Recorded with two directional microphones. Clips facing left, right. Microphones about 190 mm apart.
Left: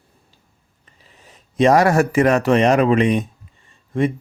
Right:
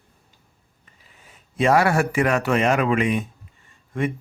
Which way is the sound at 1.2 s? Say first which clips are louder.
Left 6 dB; 35° left (ahead or behind).